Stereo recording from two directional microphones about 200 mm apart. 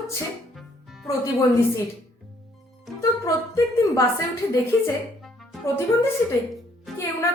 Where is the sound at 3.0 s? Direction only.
15° left (ahead or behind).